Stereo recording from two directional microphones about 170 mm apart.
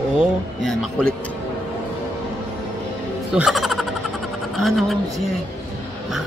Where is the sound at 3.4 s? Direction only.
Centre (ahead or behind).